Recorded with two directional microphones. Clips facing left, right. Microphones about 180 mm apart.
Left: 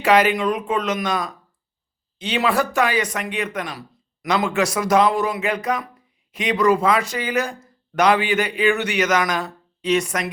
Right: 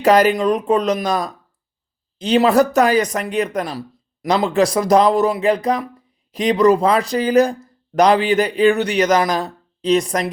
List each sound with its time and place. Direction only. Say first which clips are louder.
0.0 s speech: right 4 dB; 40° right (ahead or behind)